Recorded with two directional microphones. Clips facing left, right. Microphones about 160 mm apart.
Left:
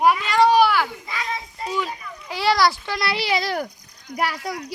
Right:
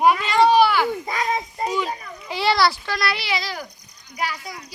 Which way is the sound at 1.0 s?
45° right (ahead or behind).